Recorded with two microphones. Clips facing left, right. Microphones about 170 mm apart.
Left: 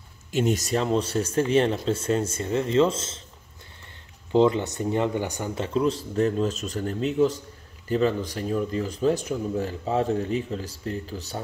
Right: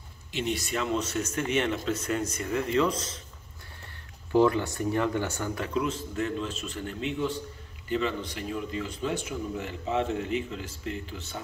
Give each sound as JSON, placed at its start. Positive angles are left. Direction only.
{"t": 0.3, "sound": "speech", "side_deg": 45}
{"t": 4.3, "sound": "speech", "side_deg": 20}